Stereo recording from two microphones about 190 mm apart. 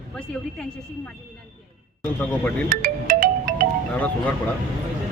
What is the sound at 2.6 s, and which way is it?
Music, 45° right (ahead or behind).